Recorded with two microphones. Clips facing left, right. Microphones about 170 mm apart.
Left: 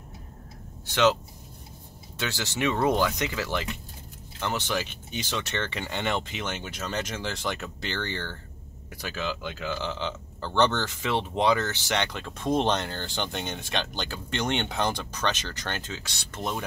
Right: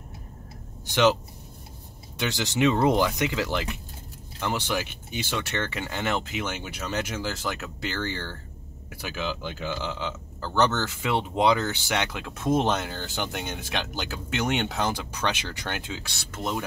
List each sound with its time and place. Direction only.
2.1 s speech: 15° right (ahead or behind)